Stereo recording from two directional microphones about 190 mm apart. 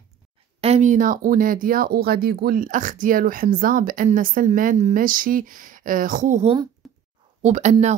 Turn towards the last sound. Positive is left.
turn(degrees=-35)  # may be behind; listen again after turning